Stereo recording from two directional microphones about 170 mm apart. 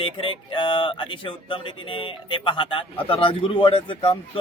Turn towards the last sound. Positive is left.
turn(degrees=35)  # may be behind; listen again after turning